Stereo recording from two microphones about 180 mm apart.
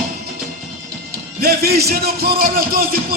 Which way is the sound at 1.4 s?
60° right (ahead or behind).